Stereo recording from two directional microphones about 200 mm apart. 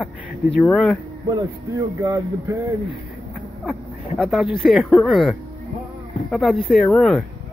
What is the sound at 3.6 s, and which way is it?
Speech, centre (ahead or behind).